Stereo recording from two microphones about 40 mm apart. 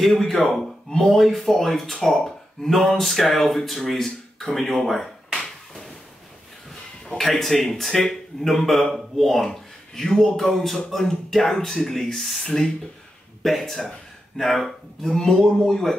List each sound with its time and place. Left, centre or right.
0.0 s speech: centre
4.6 s a sound: centre
7.1 s speech: centre
12.4 s speech: centre
13.4 s speech: centre